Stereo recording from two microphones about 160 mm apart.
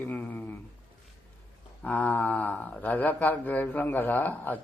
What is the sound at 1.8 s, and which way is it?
Speech, 10° left (ahead or behind).